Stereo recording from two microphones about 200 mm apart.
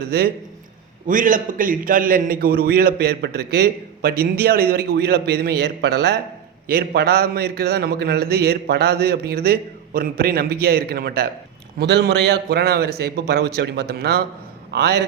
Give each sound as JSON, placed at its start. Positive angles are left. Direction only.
{"t": 0.0, "sound": "a man's voice", "side_deg": -50}